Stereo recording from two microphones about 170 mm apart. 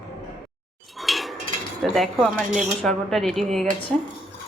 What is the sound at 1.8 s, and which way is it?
Speech, centre (ahead or behind).